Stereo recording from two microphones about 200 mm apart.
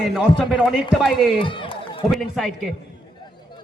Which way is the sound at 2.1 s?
Centre (ahead or behind).